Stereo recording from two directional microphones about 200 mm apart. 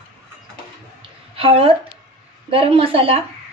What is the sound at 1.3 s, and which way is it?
A woman's voice, 25° right (ahead or behind).